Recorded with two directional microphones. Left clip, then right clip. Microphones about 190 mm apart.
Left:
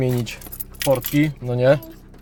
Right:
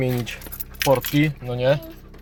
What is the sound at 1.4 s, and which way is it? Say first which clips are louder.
Speech: left 6 dB; 40° left (ahead or behind).